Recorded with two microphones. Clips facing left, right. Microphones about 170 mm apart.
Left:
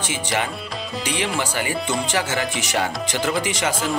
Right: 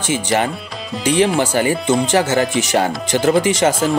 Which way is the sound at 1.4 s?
40° right (ahead or behind).